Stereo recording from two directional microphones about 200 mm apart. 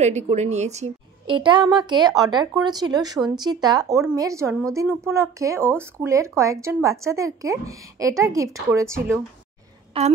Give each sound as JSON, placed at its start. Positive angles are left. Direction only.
{"t": 0.0, "sound": "a woman's voice", "side_deg": -35}
{"t": 9.9, "sound": "speech", "side_deg": -30}